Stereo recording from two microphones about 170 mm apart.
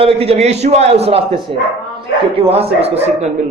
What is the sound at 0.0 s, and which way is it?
Speech, 35° right (ahead or behind).